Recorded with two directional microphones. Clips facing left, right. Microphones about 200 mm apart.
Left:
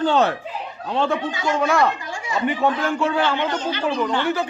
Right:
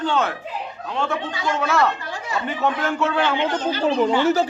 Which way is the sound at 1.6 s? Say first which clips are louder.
Left 1 dB; 15° left (ahead or behind).